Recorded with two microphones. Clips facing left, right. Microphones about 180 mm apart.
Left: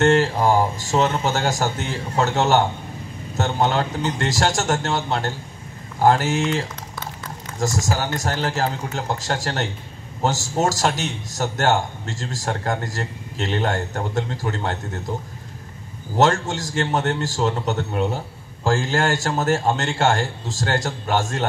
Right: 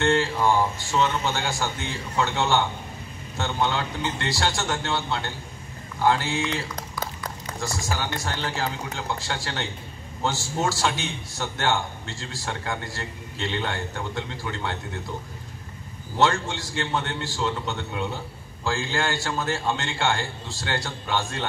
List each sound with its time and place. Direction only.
0.0 s a man's voice: 45° left (ahead or behind)
16.2 s a man's voice: 45° left (ahead or behind)